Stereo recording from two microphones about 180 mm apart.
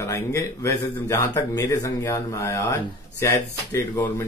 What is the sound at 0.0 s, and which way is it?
Speech, 15° left (ahead or behind).